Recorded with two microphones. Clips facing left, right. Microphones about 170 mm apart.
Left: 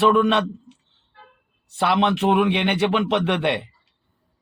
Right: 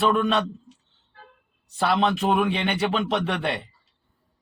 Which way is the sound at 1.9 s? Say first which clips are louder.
Left 3 dB; 65° left (ahead or behind).